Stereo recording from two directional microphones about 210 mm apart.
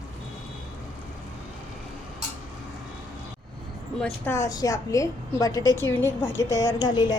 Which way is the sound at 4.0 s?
10° left (ahead or behind).